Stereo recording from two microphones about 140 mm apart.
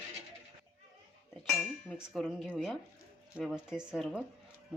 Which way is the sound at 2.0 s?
Centre (ahead or behind).